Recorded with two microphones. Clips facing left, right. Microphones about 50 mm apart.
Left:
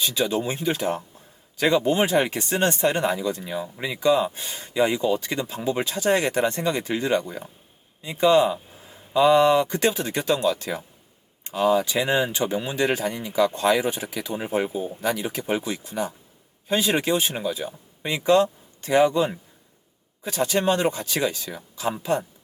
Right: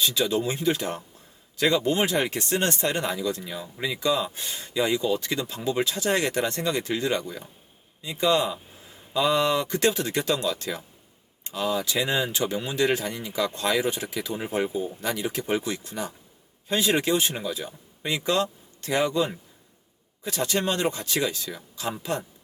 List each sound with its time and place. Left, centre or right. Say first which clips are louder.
0.0 s speech: even; centre